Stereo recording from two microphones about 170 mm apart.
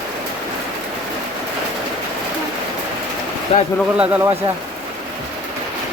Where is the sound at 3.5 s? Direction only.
35° left (ahead or behind).